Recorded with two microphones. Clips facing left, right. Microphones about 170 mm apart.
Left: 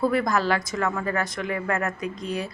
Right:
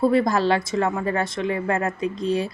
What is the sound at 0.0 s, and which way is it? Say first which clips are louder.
Speech: right 4 dB; 25° right (ahead or behind).